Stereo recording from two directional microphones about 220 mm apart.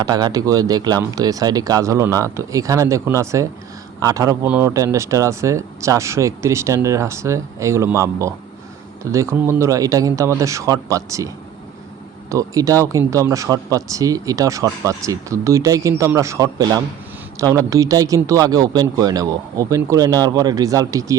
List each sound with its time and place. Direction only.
0.0 s speech: 20° right (ahead or behind)
12.3 s speech: 15° right (ahead or behind)